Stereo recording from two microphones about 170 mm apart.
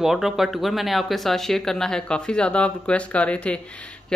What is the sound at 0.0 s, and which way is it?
Speech, centre (ahead or behind).